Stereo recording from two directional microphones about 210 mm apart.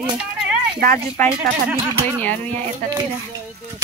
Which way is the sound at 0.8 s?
40° right (ahead or behind).